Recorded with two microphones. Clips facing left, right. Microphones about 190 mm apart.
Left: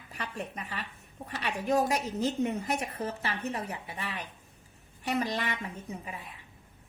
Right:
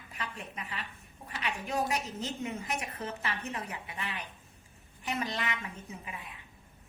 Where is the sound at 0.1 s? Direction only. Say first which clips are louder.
Left 4 dB; 35° left (ahead or behind).